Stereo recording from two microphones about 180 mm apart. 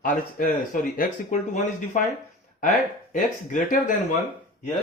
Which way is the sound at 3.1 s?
45° left (ahead or behind).